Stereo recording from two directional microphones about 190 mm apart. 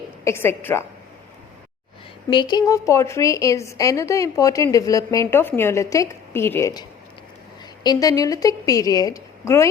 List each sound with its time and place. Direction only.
0.3 s a woman's voice: 10° left (ahead or behind)
2.3 s a woman's voice: 25° left (ahead or behind)
7.9 s a woman's voice: 20° left (ahead or behind)